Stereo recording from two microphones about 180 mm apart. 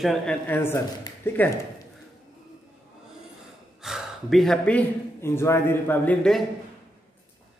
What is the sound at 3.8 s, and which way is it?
Speech, centre (ahead or behind).